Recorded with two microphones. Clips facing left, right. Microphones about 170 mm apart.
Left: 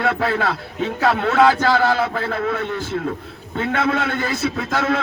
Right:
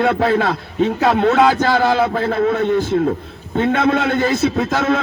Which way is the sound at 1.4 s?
15° right (ahead or behind).